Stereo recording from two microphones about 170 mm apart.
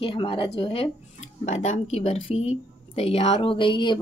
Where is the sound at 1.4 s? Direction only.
45° left (ahead or behind).